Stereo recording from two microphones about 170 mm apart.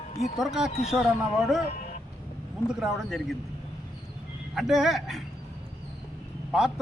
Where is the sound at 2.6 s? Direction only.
5° right (ahead or behind).